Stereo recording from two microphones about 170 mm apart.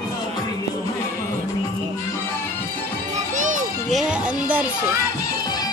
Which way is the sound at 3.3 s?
50° right (ahead or behind).